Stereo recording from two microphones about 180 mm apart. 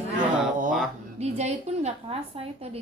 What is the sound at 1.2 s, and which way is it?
A woman's voice, 35° right (ahead or behind).